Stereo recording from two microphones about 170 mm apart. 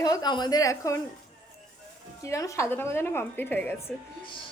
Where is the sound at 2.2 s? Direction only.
20° left (ahead or behind).